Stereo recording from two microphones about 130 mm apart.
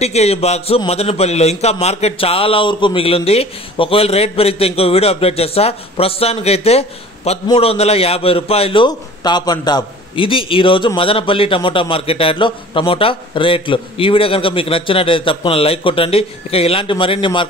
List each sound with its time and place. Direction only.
0.0 s a man's voice: 55° left (ahead or behind)
8.8 s a man's voice: 35° left (ahead or behind)